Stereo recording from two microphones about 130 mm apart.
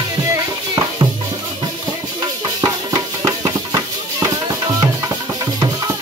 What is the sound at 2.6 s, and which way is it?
Music, 25° right (ahead or behind).